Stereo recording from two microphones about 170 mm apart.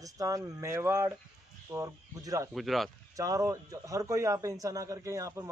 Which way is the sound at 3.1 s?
20° right (ahead or behind).